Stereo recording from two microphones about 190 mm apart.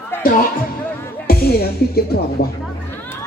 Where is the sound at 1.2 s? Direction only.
55° left (ahead or behind).